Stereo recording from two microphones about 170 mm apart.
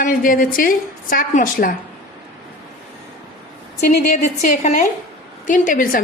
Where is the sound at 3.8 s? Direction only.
45° left (ahead or behind).